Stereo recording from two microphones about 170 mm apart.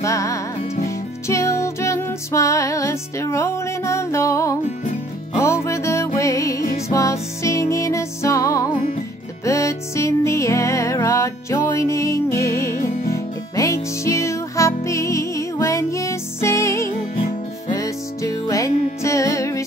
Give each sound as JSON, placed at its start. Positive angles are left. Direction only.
{"t": 0.0, "sound": "music", "side_deg": 20}